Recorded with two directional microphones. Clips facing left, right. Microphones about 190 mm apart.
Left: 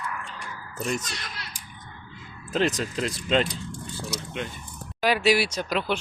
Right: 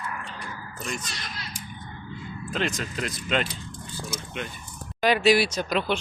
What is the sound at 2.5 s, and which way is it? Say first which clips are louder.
Speech: left 5 dB; 35° left (ahead or behind).